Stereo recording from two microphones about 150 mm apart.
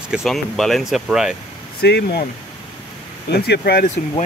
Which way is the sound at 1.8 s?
90° left.